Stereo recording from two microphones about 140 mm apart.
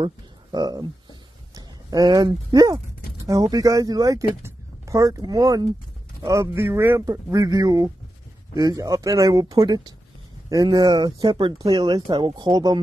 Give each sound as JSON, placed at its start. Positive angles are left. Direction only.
{"t": 0.0, "sound": "speech", "side_deg": -30}